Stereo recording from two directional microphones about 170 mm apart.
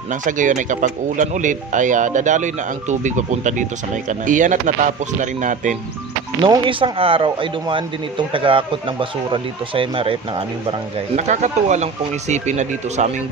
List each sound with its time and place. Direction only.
0.2 s speech: 50° right (ahead or behind)
6.4 s speech: 30° right (ahead or behind)
11.1 s speech: 45° right (ahead or behind)